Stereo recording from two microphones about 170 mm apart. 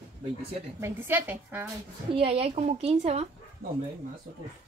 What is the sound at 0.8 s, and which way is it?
Speech, 15° right (ahead or behind).